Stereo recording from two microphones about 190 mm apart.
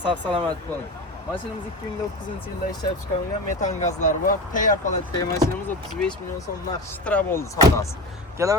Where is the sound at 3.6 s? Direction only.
40° left (ahead or behind).